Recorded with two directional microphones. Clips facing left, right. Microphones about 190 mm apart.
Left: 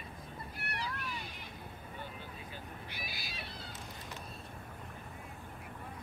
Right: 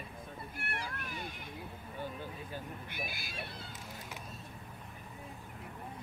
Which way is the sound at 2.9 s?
50° right (ahead or behind).